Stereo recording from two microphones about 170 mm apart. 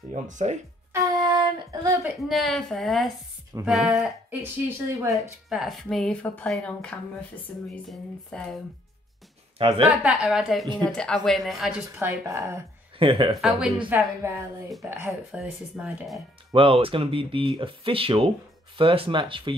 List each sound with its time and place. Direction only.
0.1 s speech: 45° right (ahead or behind)
0.9 s a sound: 20° right (ahead or behind)
2.0 s speech: centre (ahead or behind)
5.5 s speech: centre (ahead or behind)
9.6 s speech: 35° right (ahead or behind)
10.0 s speech: 5° right (ahead or behind)
12.0 s speech: 15° right (ahead or behind)
13.0 s speech: 30° right (ahead or behind)
13.4 s speech: 5° right (ahead or behind)
15.0 s speech: 5° right (ahead or behind)
16.5 s speech: 30° right (ahead or behind)